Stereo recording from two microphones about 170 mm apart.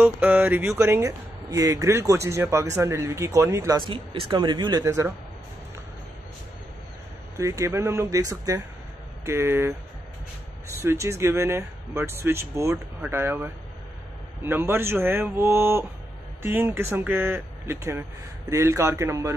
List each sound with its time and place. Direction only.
0.0 s speech: 10° right (ahead or behind)
7.3 s speech: 20° right (ahead or behind)
10.8 s speech: 15° right (ahead or behind)